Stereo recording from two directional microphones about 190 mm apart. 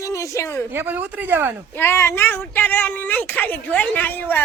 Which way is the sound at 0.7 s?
10° right (ahead or behind).